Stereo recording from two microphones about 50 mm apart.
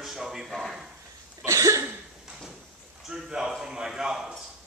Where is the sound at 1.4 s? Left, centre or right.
Right.